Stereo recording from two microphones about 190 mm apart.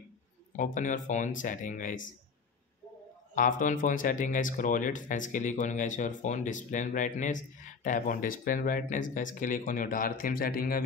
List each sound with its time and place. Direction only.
0.6 s speech: 40° left (ahead or behind)
3.3 s speech: 45° left (ahead or behind)